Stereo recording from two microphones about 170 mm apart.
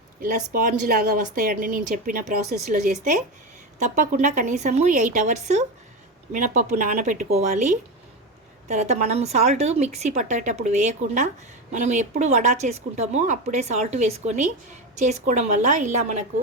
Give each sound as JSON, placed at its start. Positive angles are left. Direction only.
{"t": 0.2, "sound": "a woman's voice", "side_deg": -55}